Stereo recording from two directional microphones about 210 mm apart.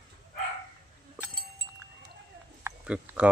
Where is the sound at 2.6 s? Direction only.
5° right (ahead or behind).